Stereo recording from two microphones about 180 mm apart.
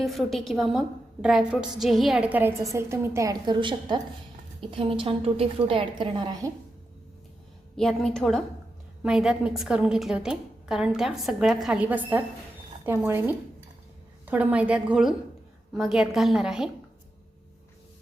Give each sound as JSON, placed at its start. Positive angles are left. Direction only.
{"t": 0.0, "sound": "a woman's voice", "side_deg": 0}
{"t": 7.8, "sound": "a woman's voice", "side_deg": 0}